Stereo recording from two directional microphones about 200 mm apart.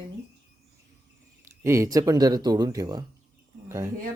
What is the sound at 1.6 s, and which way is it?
Speech, 15° right (ahead or behind).